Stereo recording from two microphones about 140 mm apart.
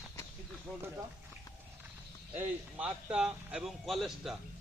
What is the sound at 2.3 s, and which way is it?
Speech, 10° right (ahead or behind).